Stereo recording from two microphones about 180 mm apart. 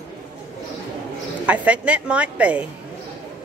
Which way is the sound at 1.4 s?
5° right (ahead or behind).